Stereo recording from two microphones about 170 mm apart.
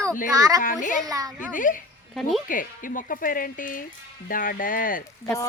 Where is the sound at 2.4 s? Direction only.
50° left (ahead or behind).